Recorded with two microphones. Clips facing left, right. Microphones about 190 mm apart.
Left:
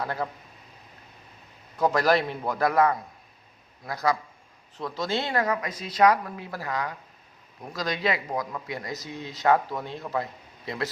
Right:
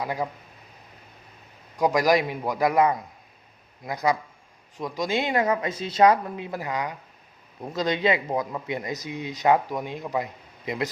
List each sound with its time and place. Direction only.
0.0 s a man's voice: 10° right (ahead or behind)
1.8 s a man's voice: 15° right (ahead or behind)